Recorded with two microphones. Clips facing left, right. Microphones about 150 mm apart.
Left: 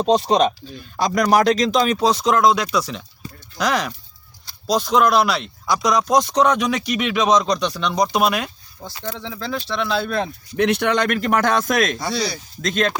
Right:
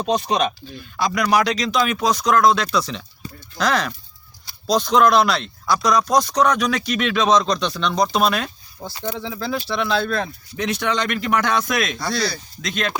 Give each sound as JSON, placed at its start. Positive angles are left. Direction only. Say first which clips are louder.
{"t": 0.0, "sound": "speech", "louder": "left 4 dB", "side_deg": 30}
{"t": 2.6, "sound": "speech", "louder": "even", "side_deg": 5}
{"t": 9.0, "sound": "speech", "louder": "right 2 dB", "side_deg": -10}
{"t": 10.6, "sound": "speech", "louder": "left 4 dB", "side_deg": 60}
{"t": 11.9, "sound": "speech", "louder": "even", "side_deg": 20}
{"t": 12.6, "sound": "speech", "louder": "left 5 dB", "side_deg": 40}